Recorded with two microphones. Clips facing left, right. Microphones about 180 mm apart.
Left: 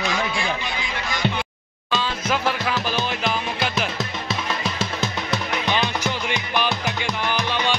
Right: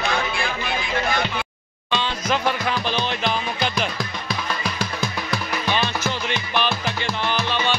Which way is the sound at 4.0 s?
25° left (ahead or behind).